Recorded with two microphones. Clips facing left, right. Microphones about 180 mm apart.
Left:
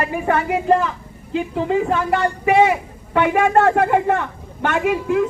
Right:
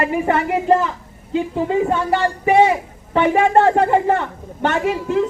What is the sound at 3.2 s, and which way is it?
A man's voice, 30° right (ahead or behind).